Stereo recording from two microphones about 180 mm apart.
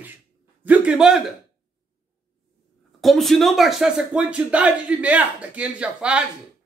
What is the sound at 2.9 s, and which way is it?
Speech, centre (ahead or behind).